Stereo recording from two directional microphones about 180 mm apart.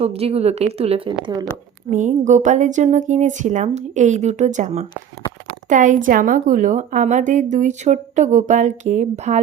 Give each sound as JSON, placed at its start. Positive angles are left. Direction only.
{"t": 0.0, "sound": "speech", "side_deg": -35}
{"t": 1.9, "sound": "a woman's voice", "side_deg": -45}